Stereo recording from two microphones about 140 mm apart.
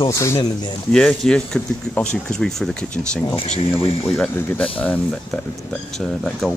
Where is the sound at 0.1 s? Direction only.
20° left (ahead or behind).